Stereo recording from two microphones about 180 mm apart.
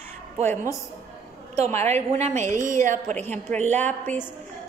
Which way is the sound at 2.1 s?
40° right (ahead or behind).